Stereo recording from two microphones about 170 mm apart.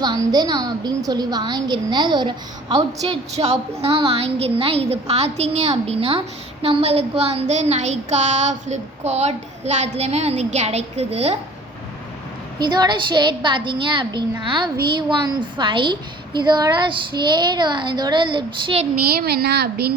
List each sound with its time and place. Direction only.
0.0 s a woman's voice: 25° right (ahead or behind)
3.3 s a woman's voice: 40° right (ahead or behind)
12.6 s a woman's voice: 25° right (ahead or behind)
19.1 s speech: 65° right (ahead or behind)